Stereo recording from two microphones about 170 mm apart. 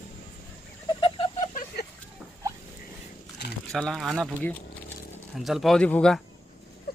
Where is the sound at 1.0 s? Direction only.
30° left (ahead or behind).